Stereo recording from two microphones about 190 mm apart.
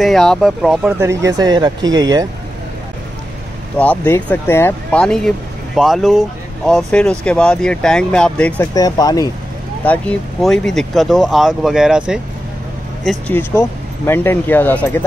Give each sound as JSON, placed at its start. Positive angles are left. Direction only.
{"t": 0.0, "sound": "speech", "side_deg": 0}
{"t": 1.0, "sound": "speech", "side_deg": -20}
{"t": 3.7, "sound": "speech", "side_deg": 10}
{"t": 8.7, "sound": "speech", "side_deg": 20}
{"t": 9.8, "sound": "speech", "side_deg": 5}
{"t": 13.3, "sound": "speech", "side_deg": 10}